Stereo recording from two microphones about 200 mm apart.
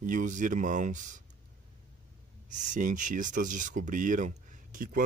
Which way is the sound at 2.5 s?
40° right (ahead or behind).